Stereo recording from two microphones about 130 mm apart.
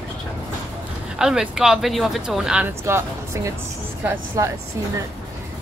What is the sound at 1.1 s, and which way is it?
Speech, 5° right (ahead or behind).